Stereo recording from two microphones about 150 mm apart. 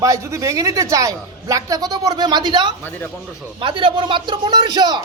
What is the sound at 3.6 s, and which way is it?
Speech, 35° right (ahead or behind).